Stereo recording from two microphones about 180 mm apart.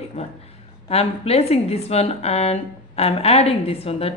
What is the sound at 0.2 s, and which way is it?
Speech, 35° left (ahead or behind).